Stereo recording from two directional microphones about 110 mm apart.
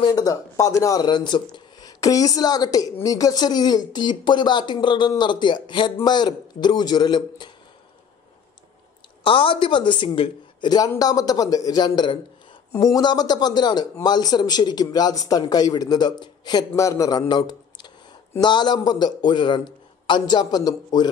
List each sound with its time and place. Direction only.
0.0 s speech: 35° left (ahead or behind)
9.2 s speech: 50° left (ahead or behind)
11.0 s speech: 35° left (ahead or behind)
16.7 s a man's voice: 30° left (ahead or behind)